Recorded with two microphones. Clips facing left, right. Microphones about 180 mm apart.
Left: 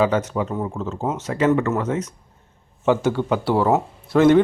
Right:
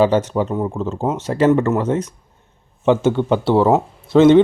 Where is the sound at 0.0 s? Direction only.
30° right (ahead or behind).